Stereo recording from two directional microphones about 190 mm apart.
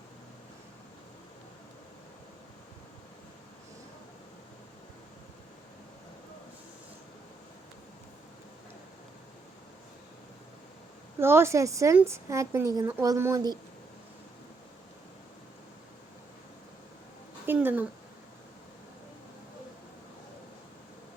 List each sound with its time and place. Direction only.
11.2 s a woman's voice: 10° right (ahead or behind)
17.4 s speech: 10° right (ahead or behind)